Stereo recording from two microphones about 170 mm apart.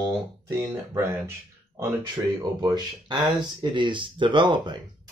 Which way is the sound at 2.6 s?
25° right (ahead or behind).